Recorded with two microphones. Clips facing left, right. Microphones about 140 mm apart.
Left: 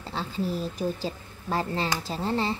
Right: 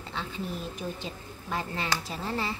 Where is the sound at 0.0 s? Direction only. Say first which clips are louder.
Left 5 dB; 35° left (ahead or behind).